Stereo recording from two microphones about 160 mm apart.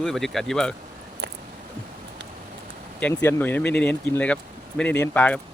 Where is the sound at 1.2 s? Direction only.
90° right.